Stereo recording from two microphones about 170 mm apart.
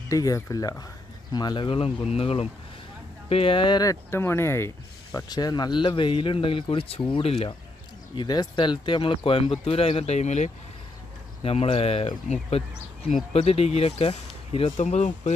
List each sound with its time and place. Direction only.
0.1 s speech: 20° left (ahead or behind); by 7.5 s 35° left (ahead or behind)
8.1 s speech: 25° left (ahead or behind); by 15.3 s 45° left (ahead or behind)